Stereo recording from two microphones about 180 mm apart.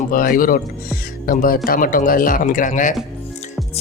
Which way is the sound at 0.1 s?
50° left (ahead or behind).